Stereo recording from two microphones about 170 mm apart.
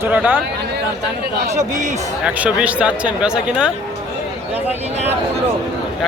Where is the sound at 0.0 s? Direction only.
10° right (ahead or behind).